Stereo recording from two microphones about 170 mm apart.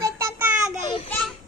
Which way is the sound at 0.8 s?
30° left (ahead or behind).